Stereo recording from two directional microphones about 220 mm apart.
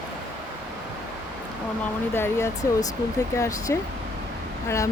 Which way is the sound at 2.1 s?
10° left (ahead or behind).